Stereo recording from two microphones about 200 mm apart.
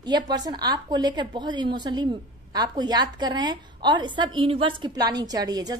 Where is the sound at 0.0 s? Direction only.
20° right (ahead or behind).